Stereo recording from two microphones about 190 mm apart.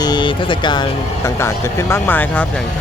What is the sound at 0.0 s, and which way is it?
Speech, 25° left (ahead or behind).